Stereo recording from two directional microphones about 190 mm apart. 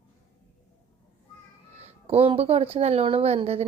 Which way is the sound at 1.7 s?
30° right (ahead or behind).